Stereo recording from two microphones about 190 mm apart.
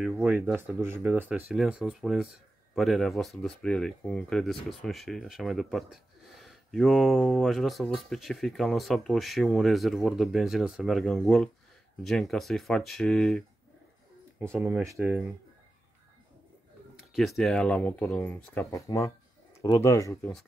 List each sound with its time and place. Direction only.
0.0 s speech: 5° right (ahead or behind)
14.4 s speech: 10° right (ahead or behind)
17.1 s speech: centre (ahead or behind); by 20.2 s 15° left (ahead or behind)